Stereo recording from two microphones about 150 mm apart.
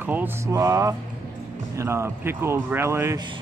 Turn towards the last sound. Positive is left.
turn(degrees=-20)  # may be behind; listen again after turning